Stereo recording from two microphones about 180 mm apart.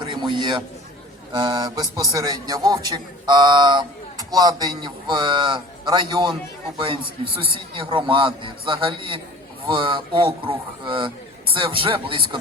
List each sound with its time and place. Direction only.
0.0 s a man's voice: 25° right (ahead or behind)